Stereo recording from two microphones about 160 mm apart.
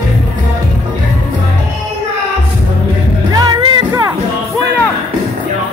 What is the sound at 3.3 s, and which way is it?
Music, 25° right (ahead or behind).